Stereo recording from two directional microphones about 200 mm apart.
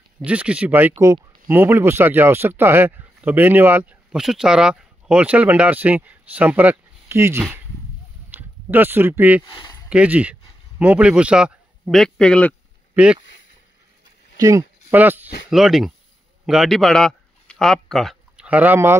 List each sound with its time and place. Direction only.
0.2 s speech: 5° right (ahead or behind)
9.5 s a sound: 20° left (ahead or behind)
9.8 s a man's voice: 5° right (ahead or behind)
12.9 s speech: 5° right (ahead or behind)
14.3 s a man's voice: 15° right (ahead or behind)